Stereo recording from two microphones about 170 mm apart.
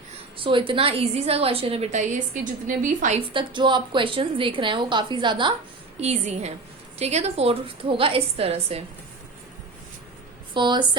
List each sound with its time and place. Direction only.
0.3 s a woman's voice: 30° right (ahead or behind); by 3.2 s 50° right (ahead or behind)
3.2 s a woman's voice: 30° right (ahead or behind)
6.0 s a woman's voice: 40° right (ahead or behind)
10.5 s a woman's voice: 25° right (ahead or behind)